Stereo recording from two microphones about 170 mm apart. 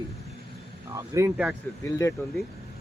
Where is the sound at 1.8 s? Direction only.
15° left (ahead or behind).